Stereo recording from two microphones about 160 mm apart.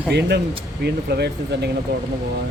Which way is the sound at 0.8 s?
90° right.